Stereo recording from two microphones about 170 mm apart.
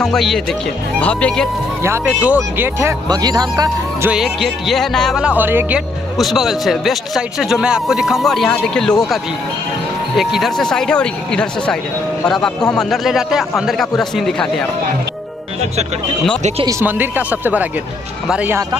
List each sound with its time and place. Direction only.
0.0 s speech: centre (ahead or behind)
1.8 s speech: 10° right (ahead or behind)
3.1 s speech: 25° right (ahead or behind)
4.1 s speech: centre (ahead or behind)
6.1 s speech: centre (ahead or behind)
10.1 s speech: centre (ahead or behind)
16.8 s speech: 10° right (ahead or behind)